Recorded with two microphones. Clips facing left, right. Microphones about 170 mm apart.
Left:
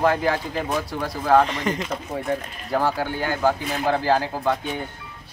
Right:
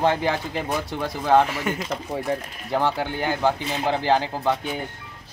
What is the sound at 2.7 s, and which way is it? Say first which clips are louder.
Speech: even; 25° right (ahead or behind).